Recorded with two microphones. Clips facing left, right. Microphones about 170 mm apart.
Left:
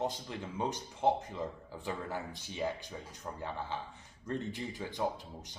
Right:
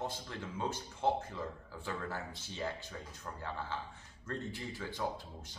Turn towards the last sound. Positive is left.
turn(degrees=15)  # may be behind; listen again after turning